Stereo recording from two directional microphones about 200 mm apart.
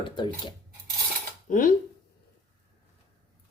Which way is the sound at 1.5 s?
45° left (ahead or behind).